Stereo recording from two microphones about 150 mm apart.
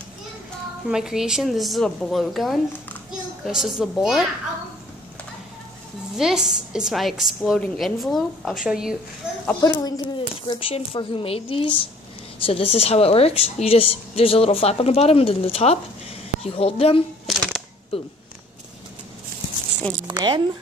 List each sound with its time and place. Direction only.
0.8 s a woman's voice: 5° right (ahead or behind)
6.1 s a woman's voice: 5° right (ahead or behind)
9.6 s a woman's voice: 25° left (ahead or behind)
17.3 s a sound: centre (ahead or behind)
17.9 s a woman's voice: 40° left (ahead or behind)
20.1 s speech: 30° right (ahead or behind)